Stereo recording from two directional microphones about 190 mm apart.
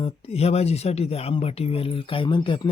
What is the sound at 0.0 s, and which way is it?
Speech, 30° left (ahead or behind).